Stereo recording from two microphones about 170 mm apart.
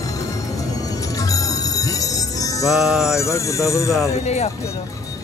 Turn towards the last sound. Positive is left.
turn(degrees=40)  # may be behind; listen again after turning